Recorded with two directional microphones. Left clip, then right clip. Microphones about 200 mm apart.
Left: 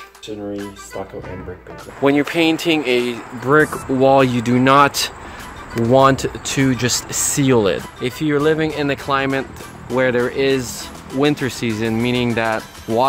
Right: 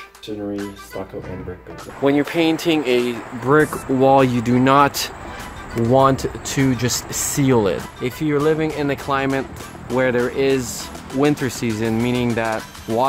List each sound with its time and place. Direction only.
2.0 s speech: 20° left (ahead or behind)
12.9 s speech: centre (ahead or behind)